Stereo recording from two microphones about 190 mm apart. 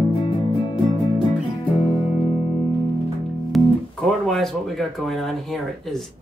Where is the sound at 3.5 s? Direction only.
Centre (ahead or behind).